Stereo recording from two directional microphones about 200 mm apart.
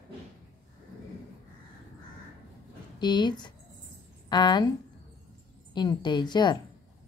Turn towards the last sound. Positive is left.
turn(degrees=20)  # may be behind; listen again after turning